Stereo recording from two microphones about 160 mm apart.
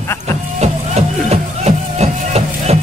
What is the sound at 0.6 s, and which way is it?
Music, 45° right (ahead or behind).